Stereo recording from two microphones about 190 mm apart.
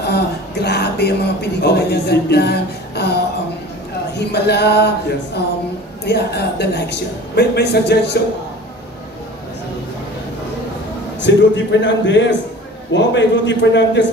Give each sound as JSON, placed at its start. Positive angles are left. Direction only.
{"t": 0.0, "sound": "music", "side_deg": 60}
{"t": 1.6, "sound": "a woman's voice", "side_deg": 60}
{"t": 4.3, "sound": "a woman's voice", "side_deg": 60}
{"t": 11.1, "sound": "a man's voice", "side_deg": 70}